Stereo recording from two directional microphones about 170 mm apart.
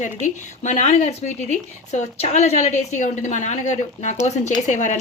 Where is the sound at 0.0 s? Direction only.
45° left (ahead or behind).